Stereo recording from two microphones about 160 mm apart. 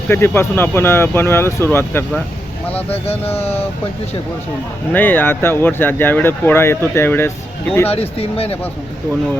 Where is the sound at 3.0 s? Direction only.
40° left (ahead or behind).